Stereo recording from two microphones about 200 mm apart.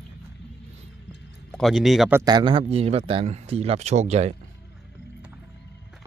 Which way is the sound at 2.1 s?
20° right (ahead or behind).